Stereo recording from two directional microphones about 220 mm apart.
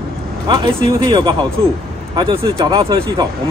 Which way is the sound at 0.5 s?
20° right (ahead or behind).